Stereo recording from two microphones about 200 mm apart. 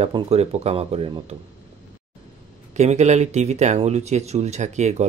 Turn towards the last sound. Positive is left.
turn(degrees=-35)  # may be behind; listen again after turning